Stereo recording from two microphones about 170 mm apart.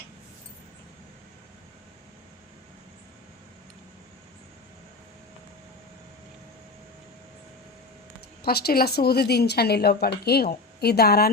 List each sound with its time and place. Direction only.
8.4 s a woman's voice: 65° left (ahead or behind)